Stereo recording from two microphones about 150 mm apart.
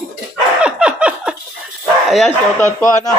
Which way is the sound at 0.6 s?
5° right (ahead or behind).